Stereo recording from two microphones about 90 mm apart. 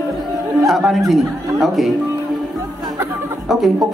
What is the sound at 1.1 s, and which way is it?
Speech, centre (ahead or behind).